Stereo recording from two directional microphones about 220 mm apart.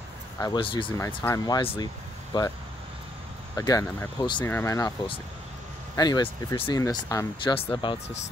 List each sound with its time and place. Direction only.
0.4 s speech: 20° left (ahead or behind)
3.5 s speech: 15° left (ahead or behind)